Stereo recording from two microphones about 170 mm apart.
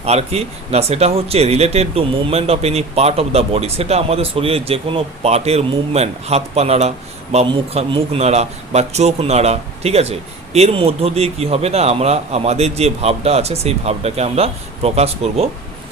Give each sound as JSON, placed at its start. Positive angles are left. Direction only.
{"t": 0.0, "sound": "speech", "side_deg": -40}